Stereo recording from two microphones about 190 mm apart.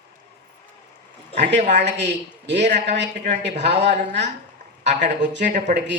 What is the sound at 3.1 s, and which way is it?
Speech, 45° right (ahead or behind).